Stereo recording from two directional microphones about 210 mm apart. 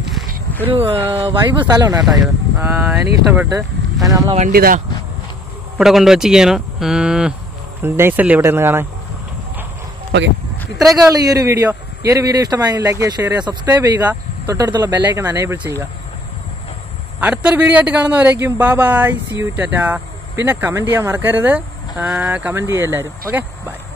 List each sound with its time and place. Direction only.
0.7 s a man's voice: 25° right (ahead or behind)
4.4 s speech: 45° right (ahead or behind)
5.8 s cattle: centre (ahead or behind)
7.8 s a man's voice: 10° right (ahead or behind)
11.1 s a man's voice: 15° right (ahead or behind)
17.2 s a man's voice: 5° right (ahead or behind)